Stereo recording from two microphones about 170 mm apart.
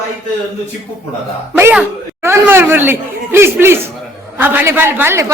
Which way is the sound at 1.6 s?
10° right (ahead or behind).